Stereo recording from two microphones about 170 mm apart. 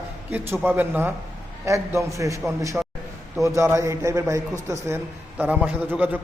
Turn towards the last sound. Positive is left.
turn(degrees=-10)  # may be behind; listen again after turning